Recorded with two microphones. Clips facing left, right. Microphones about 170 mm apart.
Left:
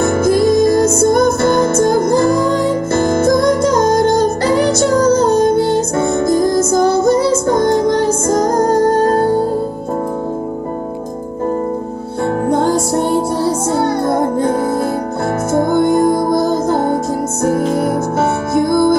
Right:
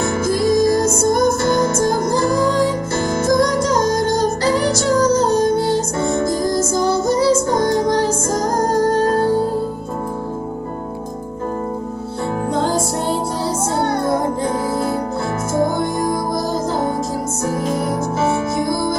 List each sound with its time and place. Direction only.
0.0 s music: 50° left (ahead or behind)
15.5 s music: 55° left (ahead or behind)